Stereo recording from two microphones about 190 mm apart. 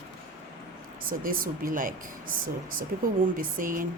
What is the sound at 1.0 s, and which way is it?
Speech, 50° right (ahead or behind).